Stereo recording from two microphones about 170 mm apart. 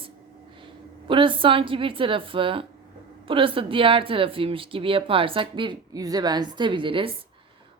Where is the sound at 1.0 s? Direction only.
30° right (ahead or behind).